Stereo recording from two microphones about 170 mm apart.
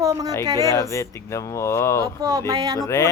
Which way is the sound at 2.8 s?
15° left (ahead or behind).